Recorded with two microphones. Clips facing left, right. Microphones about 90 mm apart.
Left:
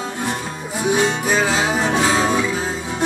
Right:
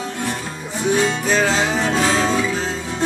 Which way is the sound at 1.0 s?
15° left (ahead or behind).